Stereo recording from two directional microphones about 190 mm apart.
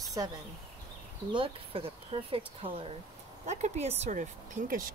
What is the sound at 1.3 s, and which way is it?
Speech, 30° right (ahead or behind).